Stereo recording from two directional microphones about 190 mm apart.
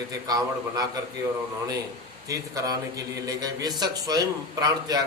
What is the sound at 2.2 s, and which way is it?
A man's voice, 20° right (ahead or behind).